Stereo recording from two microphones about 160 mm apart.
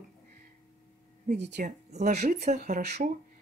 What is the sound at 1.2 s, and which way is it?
Speech, 90° right.